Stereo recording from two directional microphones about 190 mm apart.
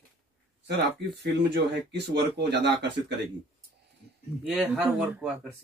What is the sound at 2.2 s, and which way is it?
Speech, 60° right (ahead or behind).